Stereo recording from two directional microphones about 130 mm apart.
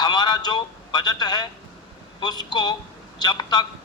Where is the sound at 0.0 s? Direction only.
35° left (ahead or behind).